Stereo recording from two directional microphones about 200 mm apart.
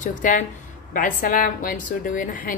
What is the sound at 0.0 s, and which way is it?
A woman's voice, 40° left (ahead or behind).